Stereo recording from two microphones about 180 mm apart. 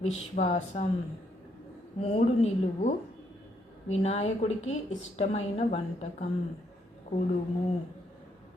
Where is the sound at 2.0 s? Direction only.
35° left (ahead or behind).